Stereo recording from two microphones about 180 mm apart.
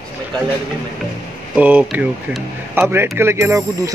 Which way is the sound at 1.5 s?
10° right (ahead or behind).